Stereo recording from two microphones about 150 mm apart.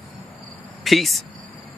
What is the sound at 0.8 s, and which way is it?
Speech, centre (ahead or behind).